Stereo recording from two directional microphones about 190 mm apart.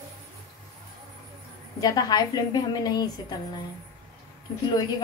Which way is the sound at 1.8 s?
20° left (ahead or behind).